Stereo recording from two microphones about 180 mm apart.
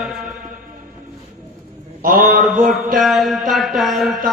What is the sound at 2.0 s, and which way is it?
Speech, 50° right (ahead or behind).